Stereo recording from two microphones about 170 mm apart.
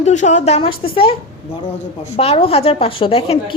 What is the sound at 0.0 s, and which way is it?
Speech, 45° left (ahead or behind).